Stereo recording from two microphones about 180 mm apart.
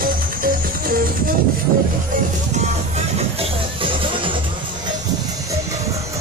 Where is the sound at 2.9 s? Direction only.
30° right (ahead or behind).